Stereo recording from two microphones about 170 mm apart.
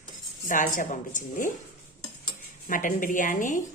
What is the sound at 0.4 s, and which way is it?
A woman's voice, 50° left (ahead or behind).